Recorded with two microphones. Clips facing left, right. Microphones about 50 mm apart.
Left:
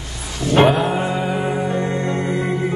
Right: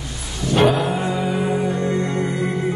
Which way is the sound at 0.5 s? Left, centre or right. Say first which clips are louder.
Left 2 dB; left.